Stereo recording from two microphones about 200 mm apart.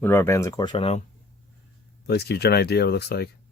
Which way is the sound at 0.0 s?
10° left (ahead or behind).